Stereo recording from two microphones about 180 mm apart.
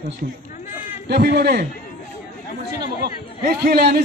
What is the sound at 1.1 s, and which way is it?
Speech, 60° right (ahead or behind).